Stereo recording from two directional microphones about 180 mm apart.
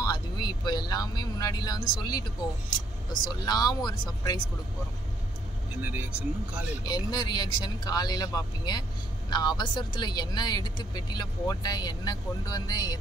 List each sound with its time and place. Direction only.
0.0 s speech: 20° left (ahead or behind)
3.3 s speech: 20° left (ahead or behind)
5.8 s speech: 10° right (ahead or behind)
6.8 s speech: 20° left (ahead or behind)